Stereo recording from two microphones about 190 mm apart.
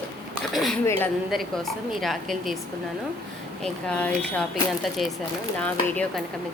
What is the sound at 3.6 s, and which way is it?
Speech, 5° left (ahead or behind).